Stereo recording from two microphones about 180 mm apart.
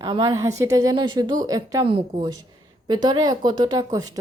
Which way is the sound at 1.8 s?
30° right (ahead or behind).